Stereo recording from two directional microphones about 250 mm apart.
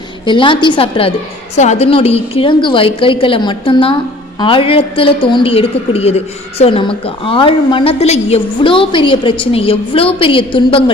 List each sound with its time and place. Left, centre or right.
0.3 s a woman's voice: centre